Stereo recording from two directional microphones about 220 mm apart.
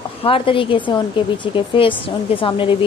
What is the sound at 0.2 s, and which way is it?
A woman's voice, 25° left (ahead or behind).